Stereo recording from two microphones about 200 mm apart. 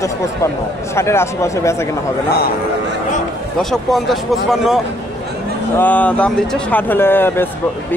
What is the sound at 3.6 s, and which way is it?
Speech, centre (ahead or behind).